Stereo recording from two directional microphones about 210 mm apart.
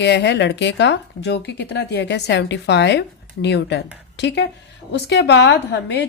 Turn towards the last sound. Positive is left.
turn(degrees=55)  # may be behind; listen again after turning